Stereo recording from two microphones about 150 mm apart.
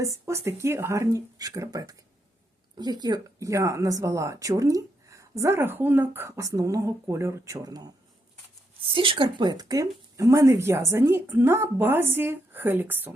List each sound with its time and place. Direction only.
0.0 s speech: 20° right (ahead or behind)